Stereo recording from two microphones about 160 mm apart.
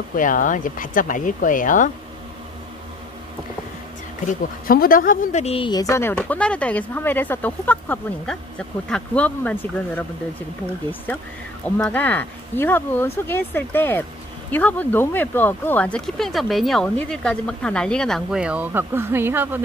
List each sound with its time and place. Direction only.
0.1 s speech: 55° left (ahead or behind)
4.3 s speech: 65° left (ahead or behind); by 5.7 s 40° left (ahead or behind)
5.7 s speech: 20° left (ahead or behind)
11.6 s speech: 10° left (ahead or behind); by 19.6 s 15° right (ahead or behind)